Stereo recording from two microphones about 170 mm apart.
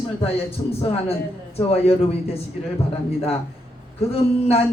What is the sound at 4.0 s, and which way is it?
Speech, 35° left (ahead or behind).